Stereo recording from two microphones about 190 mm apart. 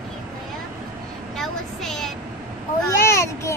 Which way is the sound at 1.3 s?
Centre (ahead or behind).